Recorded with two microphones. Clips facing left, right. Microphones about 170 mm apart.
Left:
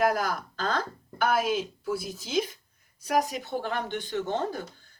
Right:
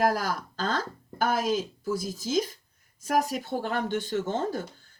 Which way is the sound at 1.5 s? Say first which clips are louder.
Right 1 dB; 45° right (ahead or behind).